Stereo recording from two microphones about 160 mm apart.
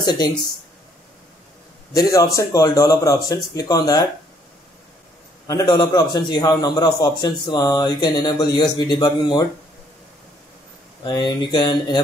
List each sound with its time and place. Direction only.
0.0 s speech: 25° left (ahead or behind)
2.0 s a man's voice: 20° left (ahead or behind)
5.5 s a man's voice: 25° left (ahead or behind)
11.1 s a man's voice: 25° left (ahead or behind)